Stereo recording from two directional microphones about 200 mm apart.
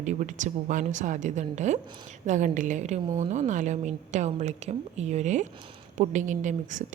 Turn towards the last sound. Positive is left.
turn(degrees=-40)  # may be behind; listen again after turning